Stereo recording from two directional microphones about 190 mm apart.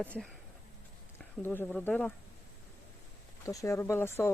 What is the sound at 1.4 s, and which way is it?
Speech, 10° left (ahead or behind).